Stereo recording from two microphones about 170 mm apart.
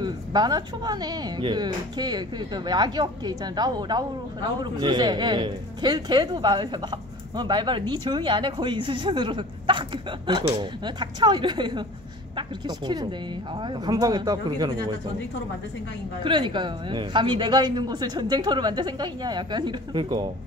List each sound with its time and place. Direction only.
0.0 s speech: 25° right (ahead or behind)
16.3 s speech: 30° right (ahead or behind)